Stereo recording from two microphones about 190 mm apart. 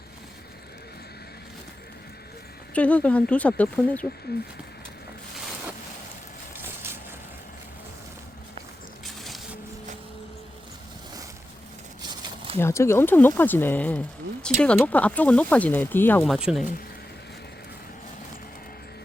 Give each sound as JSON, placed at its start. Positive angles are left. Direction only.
{"t": 2.7, "sound": "speech", "side_deg": 5}
{"t": 4.3, "sound": "speech", "side_deg": 55}
{"t": 9.0, "sound": "a sound", "side_deg": 0}
{"t": 12.5, "sound": "speech", "side_deg": 15}